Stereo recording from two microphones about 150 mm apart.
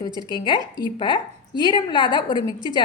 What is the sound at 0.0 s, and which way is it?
A woman's voice, 30° left (ahead or behind).